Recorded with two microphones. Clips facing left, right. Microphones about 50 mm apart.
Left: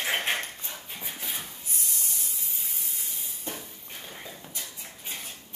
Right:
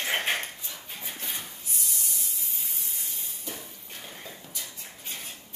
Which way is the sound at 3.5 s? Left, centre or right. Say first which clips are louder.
Left 2 dB; left.